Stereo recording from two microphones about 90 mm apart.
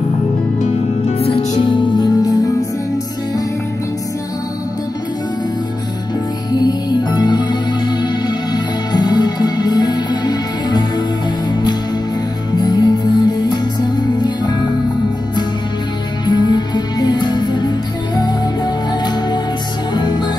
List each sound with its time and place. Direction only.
1.2 s music: 75° left (ahead or behind)
2.2 s music: 45° left (ahead or behind)
6.6 s music: 50° left (ahead or behind)
12.5 s music: 50° left (ahead or behind)
16.3 s music: 55° left (ahead or behind)
19.9 s music: 50° left (ahead or behind)